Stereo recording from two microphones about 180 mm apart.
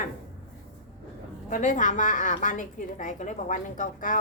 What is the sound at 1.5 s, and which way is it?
A woman's voice, 45° left (ahead or behind).